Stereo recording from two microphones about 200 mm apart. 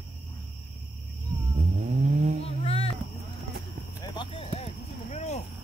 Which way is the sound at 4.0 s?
25° left (ahead or behind).